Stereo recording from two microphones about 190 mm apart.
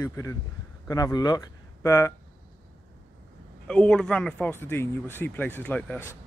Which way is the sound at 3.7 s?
5° left (ahead or behind).